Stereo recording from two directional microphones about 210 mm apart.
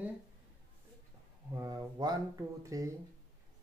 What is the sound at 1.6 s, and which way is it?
Speech, 15° right (ahead or behind).